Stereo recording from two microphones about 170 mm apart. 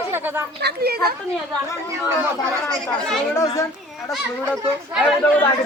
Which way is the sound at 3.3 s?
20° left (ahead or behind).